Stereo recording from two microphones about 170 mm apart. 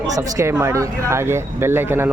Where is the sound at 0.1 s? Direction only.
15° right (ahead or behind).